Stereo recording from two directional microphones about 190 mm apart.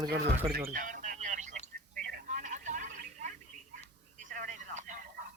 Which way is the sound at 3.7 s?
45° right (ahead or behind).